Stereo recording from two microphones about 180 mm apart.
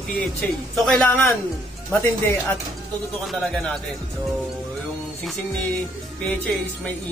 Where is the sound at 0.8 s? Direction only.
5° left (ahead or behind).